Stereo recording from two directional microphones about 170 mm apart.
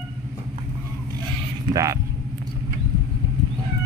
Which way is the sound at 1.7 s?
20° right (ahead or behind).